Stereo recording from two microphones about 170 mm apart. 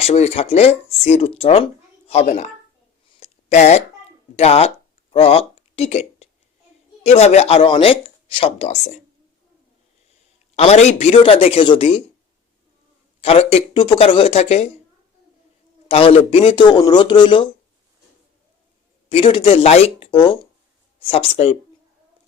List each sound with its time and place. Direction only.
0.0 s speech: 40° left (ahead or behind)
3.2 s a sound: 45° left (ahead or behind)
4.4 s speech: 35° left (ahead or behind)
10.5 s speech: 40° left (ahead or behind)
13.2 s speech: 35° left (ahead or behind)
15.9 s speech: 35° left (ahead or behind)
19.0 s speech: 30° left (ahead or behind)